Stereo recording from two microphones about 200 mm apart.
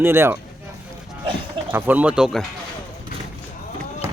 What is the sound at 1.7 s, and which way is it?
Speech, 10° right (ahead or behind).